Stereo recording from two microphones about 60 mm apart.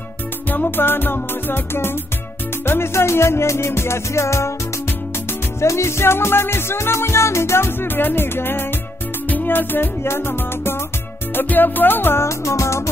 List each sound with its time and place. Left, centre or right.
0.7 s music: left
5.6 s music: left
11.3 s music: left
12.3 s music: left